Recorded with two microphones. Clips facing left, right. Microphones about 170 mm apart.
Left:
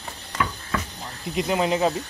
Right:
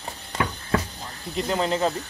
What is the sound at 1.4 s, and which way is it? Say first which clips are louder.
Speech: left 2 dB; 10° left (ahead or behind).